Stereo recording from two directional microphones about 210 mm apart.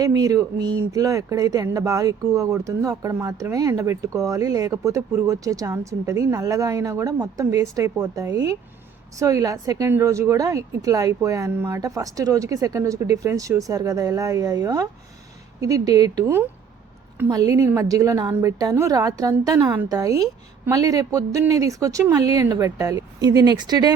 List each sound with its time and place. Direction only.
0.0 s speech: 15° right (ahead or behind)